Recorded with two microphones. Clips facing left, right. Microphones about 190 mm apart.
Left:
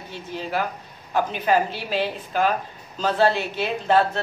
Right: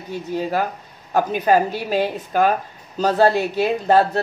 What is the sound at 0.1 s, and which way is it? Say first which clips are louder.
A woman's voice: right 6 dB; 45° right (ahead or behind).